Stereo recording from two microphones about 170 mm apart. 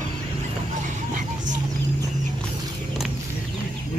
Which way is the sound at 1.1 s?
45° right (ahead or behind).